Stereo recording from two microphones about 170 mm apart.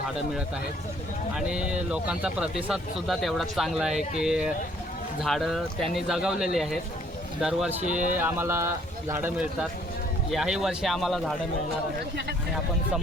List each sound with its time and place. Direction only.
1.4 s speech: 5° right (ahead or behind)